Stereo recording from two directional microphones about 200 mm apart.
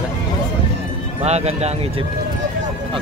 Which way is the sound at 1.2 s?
35° right (ahead or behind).